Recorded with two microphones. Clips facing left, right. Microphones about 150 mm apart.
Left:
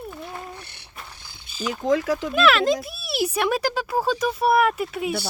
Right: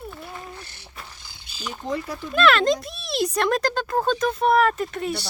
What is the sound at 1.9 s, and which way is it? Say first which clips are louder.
Speech: left 8 dB; 90° left.